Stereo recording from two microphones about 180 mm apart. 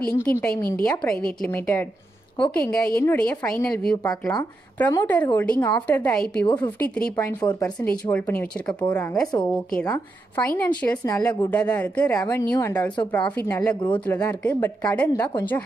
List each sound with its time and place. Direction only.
0.1 s a woman's voice: 15° left (ahead or behind)
4.0 s a woman's voice: 20° left (ahead or behind)
9.8 s a woman's voice: 15° left (ahead or behind)